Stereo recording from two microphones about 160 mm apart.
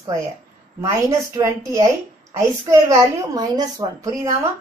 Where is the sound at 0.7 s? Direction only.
15° right (ahead or behind).